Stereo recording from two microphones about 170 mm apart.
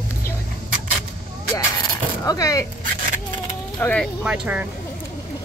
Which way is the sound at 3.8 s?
5° left (ahead or behind).